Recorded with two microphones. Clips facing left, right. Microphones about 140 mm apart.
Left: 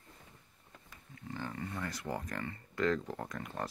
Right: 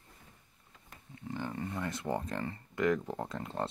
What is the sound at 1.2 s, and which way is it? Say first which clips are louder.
Speech: right 3 dB; 20° right (ahead or behind).